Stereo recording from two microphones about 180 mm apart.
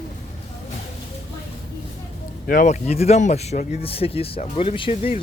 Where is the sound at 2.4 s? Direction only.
50° left (ahead or behind).